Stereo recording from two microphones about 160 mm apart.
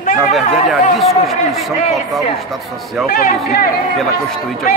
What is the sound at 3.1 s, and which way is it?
Speech, 65° left (ahead or behind).